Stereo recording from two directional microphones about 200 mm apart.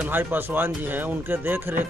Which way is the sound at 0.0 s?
10° right (ahead or behind).